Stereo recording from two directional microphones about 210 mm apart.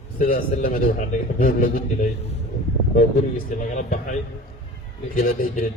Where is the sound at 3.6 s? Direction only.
35° left (ahead or behind).